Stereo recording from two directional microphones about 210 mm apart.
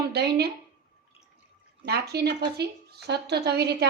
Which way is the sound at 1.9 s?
50° right (ahead or behind).